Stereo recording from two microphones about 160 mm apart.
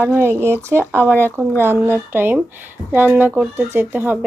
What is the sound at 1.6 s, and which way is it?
Speech, 15° right (ahead or behind).